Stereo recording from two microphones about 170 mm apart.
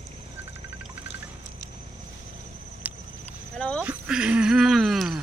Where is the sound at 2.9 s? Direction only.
10° right (ahead or behind).